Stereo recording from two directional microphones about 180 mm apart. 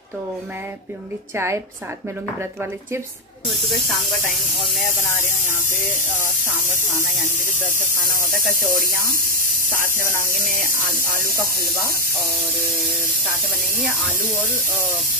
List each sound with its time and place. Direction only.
1.3 s a woman's voice: 15° right (ahead or behind)
7.4 s speech: 45° right (ahead or behind)